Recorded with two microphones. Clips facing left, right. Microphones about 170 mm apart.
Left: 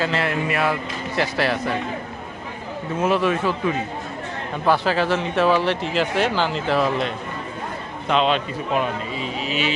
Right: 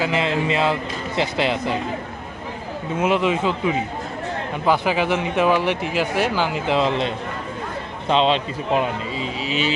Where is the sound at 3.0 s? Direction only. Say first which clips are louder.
Even; 15° right (ahead or behind).